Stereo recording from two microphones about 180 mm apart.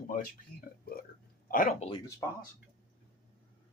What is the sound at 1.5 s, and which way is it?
Speech, 50° left (ahead or behind).